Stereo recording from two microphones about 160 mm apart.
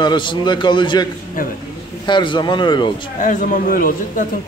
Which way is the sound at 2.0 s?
30° left (ahead or behind).